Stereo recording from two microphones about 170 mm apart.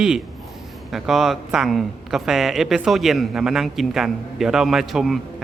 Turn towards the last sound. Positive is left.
turn(degrees=0)  # may be behind; listen again after turning